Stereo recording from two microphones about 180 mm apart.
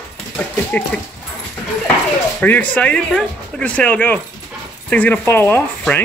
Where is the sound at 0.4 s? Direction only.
10° left (ahead or behind).